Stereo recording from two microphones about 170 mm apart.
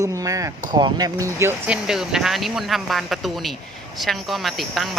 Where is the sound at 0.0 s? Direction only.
20° right (ahead or behind).